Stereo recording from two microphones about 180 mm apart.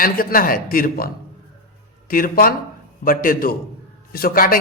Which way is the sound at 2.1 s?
50° left (ahead or behind).